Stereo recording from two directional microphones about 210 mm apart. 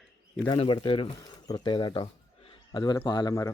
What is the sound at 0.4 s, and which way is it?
A man's voice, 25° left (ahead or behind).